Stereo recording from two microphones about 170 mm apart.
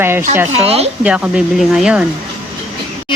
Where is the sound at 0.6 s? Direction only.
35° right (ahead or behind).